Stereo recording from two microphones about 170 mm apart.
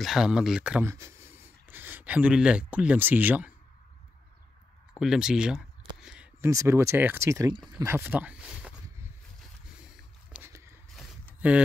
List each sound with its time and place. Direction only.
0.0 s speech: 5° right (ahead or behind)
4.9 s a sound: 5° right (ahead or behind)
6.4 s speech: 15° right (ahead or behind)
7.8 s a sound: 15° right (ahead or behind)
9.4 s boat: 5° right (ahead or behind)
10.5 s walk: 15° right (ahead or behind)
11.4 s speech: 10° right (ahead or behind)